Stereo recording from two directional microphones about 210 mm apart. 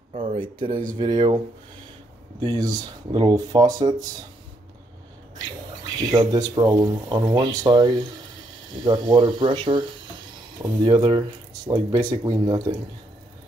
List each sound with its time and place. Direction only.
0.1 s speech: 30° right (ahead or behind)
0.7 s speech: 40° right (ahead or behind)
0.9 s speech: 20° right (ahead or behind)
2.4 s speech: 20° right (ahead or behind)
6.0 s speech: 20° right (ahead or behind)